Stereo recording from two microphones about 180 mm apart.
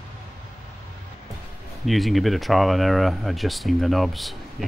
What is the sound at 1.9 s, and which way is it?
Speech, centre (ahead or behind).